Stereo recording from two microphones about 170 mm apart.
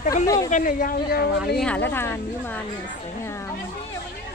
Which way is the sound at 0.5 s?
55° left (ahead or behind).